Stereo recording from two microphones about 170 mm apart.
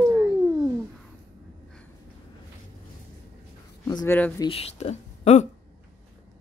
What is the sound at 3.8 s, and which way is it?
Speech, 15° left (ahead or behind).